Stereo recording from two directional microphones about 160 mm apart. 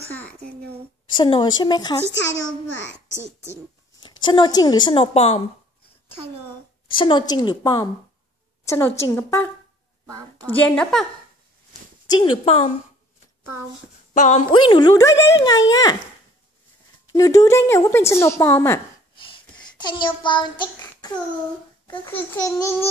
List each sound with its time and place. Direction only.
0.1 s a sound: 10° left (ahead or behind)
1.1 s speech: 30° left (ahead or behind)
2.1 s a child's voice: 90° left
4.0 s speech: 30° left (ahead or behind)
7.0 s speech: 30° left (ahead or behind)
8.6 s a woman's voice: 15° left (ahead or behind)
12.4 s a woman's voice: 40° left (ahead or behind)
14.1 s a woman's voice: 45° left (ahead or behind)
14.5 s speech: 30° left (ahead or behind)
17.1 s speech: 20° left (ahead or behind)
19.3 s child singing: 30° left (ahead or behind)
22.0 s speech: 15° left (ahead or behind)